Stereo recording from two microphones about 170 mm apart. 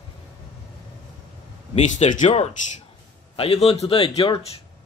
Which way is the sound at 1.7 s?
45° left (ahead or behind).